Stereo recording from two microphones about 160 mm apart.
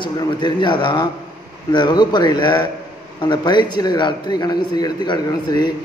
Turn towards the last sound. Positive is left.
turn(degrees=25)  # may be behind; listen again after turning